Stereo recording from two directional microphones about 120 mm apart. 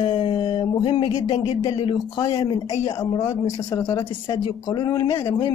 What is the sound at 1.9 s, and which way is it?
Speech, 35° left (ahead or behind).